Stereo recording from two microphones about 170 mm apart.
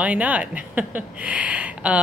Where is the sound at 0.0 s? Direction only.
10° right (ahead or behind).